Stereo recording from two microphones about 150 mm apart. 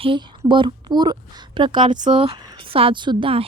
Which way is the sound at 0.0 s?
35° right (ahead or behind).